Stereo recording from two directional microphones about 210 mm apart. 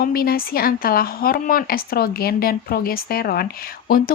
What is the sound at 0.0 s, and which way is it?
A woman's voice, 45° left (ahead or behind).